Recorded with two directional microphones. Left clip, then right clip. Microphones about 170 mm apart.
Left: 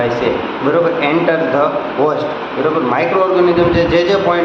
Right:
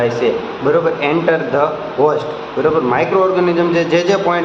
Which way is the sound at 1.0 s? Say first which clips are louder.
Left 1 dB; 20° right (ahead or behind).